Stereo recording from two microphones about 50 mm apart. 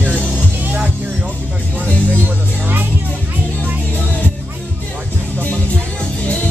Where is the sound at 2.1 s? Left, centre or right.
Right.